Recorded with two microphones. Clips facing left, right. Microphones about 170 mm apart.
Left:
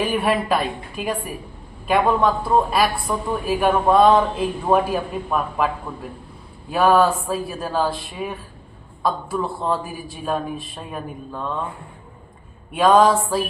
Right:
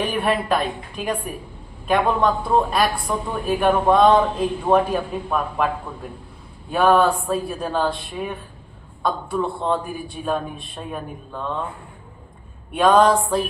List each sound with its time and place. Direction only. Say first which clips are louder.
0.0 s a woman's voice: left 1 dB; 5° left (ahead or behind)
12.7 s a woman's voice: even; centre (ahead or behind)